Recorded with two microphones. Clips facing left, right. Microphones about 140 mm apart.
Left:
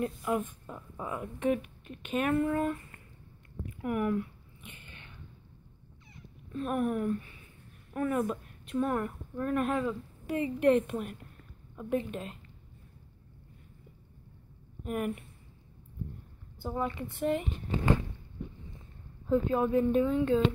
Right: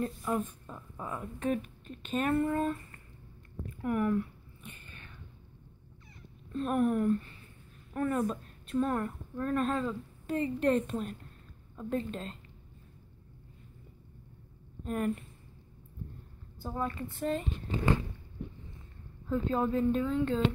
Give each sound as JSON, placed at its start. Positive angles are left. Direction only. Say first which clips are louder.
{"t": 0.0, "sound": "speech", "louder": "left 1 dB", "side_deg": 10}
{"t": 4.6, "sound": "a sound", "louder": "right 1 dB", "side_deg": 20}
{"t": 6.5, "sound": "speech", "louder": "right 2 dB", "side_deg": 5}
{"t": 14.8, "sound": "speech", "louder": "right 1 dB", "side_deg": 10}
{"t": 16.6, "sound": "speech", "louder": "left 2 dB", "side_deg": 15}
{"t": 19.2, "sound": "speech", "louder": "left 3 dB", "side_deg": 15}